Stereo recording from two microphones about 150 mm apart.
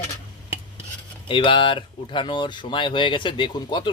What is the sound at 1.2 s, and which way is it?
A man's voice, 35° left (ahead or behind).